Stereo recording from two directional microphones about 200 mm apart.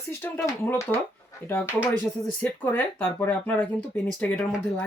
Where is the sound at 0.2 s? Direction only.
10° left (ahead or behind).